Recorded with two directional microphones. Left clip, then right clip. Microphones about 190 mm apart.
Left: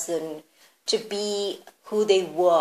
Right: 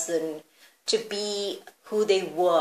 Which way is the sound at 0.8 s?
25° left (ahead or behind).